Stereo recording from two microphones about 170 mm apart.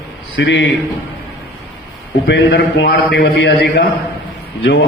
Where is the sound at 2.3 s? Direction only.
90° left; by 3.5 s 65° left (ahead or behind).